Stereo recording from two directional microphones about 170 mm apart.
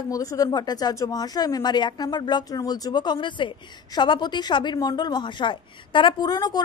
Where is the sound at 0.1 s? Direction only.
20° left (ahead or behind).